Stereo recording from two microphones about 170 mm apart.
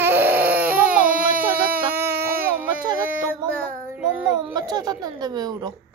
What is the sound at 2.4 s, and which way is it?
Baby cry, 10° right (ahead or behind).